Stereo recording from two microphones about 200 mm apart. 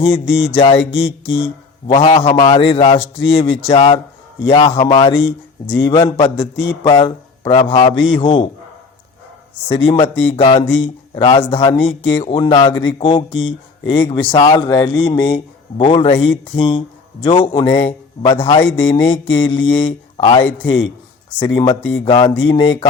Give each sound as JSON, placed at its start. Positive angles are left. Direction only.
{"t": 0.0, "sound": "speech", "side_deg": 25}
{"t": 7.9, "sound": "a man's voice", "side_deg": 70}
{"t": 8.2, "sound": "speech", "side_deg": 25}
{"t": 9.6, "sound": "speech", "side_deg": 25}